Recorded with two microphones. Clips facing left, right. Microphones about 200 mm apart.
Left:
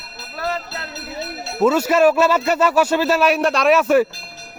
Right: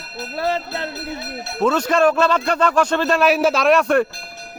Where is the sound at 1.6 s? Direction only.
5° left (ahead or behind).